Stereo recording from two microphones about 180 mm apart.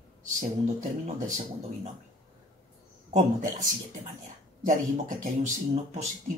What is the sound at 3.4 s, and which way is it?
Speech, 50° right (ahead or behind).